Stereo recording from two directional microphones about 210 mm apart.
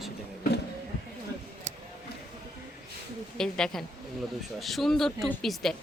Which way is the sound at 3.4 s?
5° left (ahead or behind).